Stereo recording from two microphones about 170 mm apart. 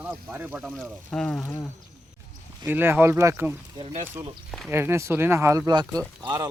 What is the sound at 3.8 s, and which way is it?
Speech, 40° right (ahead or behind).